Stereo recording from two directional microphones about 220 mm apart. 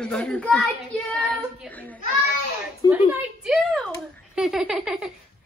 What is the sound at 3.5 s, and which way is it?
Speech, centre (ahead or behind).